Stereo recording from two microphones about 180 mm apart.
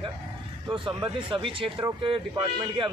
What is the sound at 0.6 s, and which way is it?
Speech, 25° right (ahead or behind).